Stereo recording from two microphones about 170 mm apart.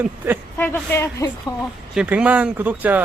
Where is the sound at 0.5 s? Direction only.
15° left (ahead or behind).